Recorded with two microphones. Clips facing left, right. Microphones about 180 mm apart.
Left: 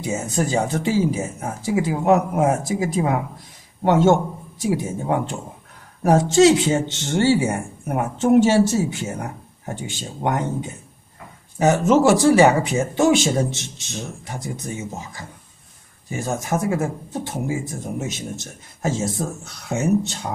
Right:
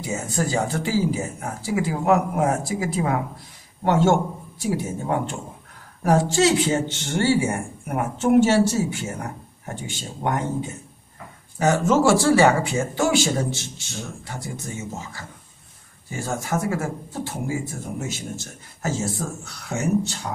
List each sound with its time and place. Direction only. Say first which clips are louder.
0.0 s speech: left 3 dB; 20° left (ahead or behind)
11.5 s speech: left 3 dB; 20° left (ahead or behind)